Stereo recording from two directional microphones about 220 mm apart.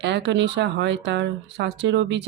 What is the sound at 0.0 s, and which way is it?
Speech, 50° right (ahead or behind).